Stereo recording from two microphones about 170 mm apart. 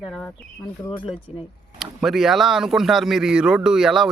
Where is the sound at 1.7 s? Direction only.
Centre (ahead or behind).